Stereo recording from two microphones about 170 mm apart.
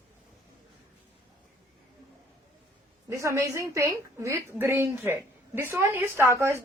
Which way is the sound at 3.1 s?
15° right (ahead or behind).